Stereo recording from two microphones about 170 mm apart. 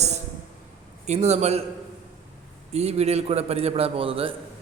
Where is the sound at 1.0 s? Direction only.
40° right (ahead or behind).